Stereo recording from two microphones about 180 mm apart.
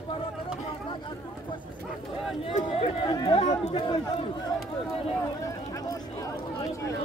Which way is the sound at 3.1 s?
20° left (ahead or behind).